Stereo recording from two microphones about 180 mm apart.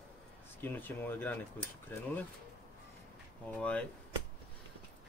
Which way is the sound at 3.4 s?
5° left (ahead or behind).